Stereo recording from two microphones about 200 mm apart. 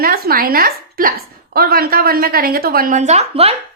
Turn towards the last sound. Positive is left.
turn(degrees=-30)  # may be behind; listen again after turning